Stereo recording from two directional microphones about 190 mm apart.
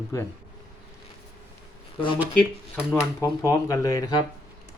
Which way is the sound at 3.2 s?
15° left (ahead or behind).